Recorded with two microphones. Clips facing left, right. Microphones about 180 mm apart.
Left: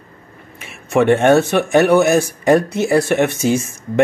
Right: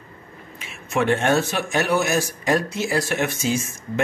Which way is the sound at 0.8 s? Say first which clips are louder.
Left 8 dB; 65° left (ahead or behind).